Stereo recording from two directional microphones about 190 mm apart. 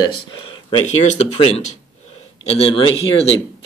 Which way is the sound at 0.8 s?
40° left (ahead or behind).